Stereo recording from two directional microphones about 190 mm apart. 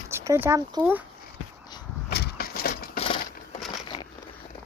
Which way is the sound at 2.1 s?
55° left (ahead or behind).